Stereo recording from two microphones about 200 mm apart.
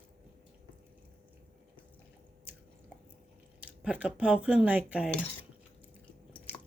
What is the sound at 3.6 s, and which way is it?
Speech, 5° right (ahead or behind).